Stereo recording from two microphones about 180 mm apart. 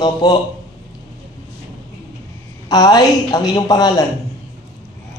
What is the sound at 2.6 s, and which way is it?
A man's voice, 20° left (ahead or behind).